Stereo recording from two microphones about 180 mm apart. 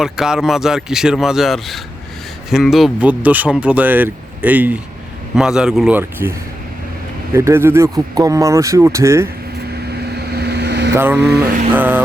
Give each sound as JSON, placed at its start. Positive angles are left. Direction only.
{"t": 0.0, "sound": "speech", "side_deg": -5}
{"t": 7.3, "sound": "speech", "side_deg": -15}
{"t": 9.9, "sound": "vehicle", "side_deg": -65}
{"t": 10.9, "sound": "speech", "side_deg": -10}